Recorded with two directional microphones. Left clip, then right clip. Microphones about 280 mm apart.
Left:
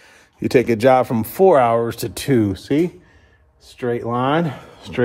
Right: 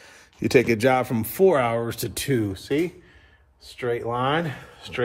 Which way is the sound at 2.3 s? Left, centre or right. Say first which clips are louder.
Left 7 dB; left.